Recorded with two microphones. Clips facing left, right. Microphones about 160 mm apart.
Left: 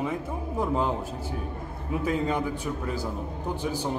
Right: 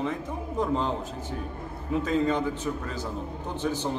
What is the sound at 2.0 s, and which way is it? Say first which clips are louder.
Speech: right 2 dB; 10° left (ahead or behind).